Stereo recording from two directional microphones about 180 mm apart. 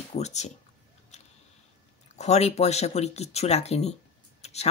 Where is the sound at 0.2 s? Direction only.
40° left (ahead or behind).